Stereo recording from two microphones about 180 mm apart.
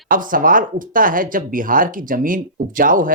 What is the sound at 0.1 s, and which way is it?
Speech, 50° right (ahead or behind).